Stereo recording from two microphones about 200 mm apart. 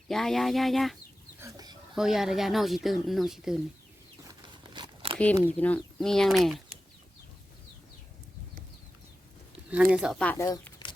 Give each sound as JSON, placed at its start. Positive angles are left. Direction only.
{"t": 0.1, "sound": "speech", "side_deg": 0}
{"t": 1.4, "sound": "chicken", "side_deg": -15}
{"t": 2.0, "sound": "speech", "side_deg": 0}
{"t": 4.2, "sound": "a sound", "side_deg": -20}
{"t": 5.1, "sound": "speech", "side_deg": 5}
{"t": 9.6, "sound": "speech", "side_deg": -5}